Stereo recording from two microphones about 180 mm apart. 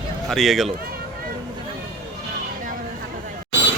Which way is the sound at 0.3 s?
Centre (ahead or behind).